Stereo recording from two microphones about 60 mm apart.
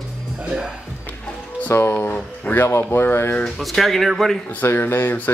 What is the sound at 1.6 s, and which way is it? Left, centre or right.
Speech, left.